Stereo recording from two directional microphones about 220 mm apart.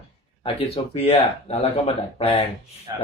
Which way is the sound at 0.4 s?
25° left (ahead or behind).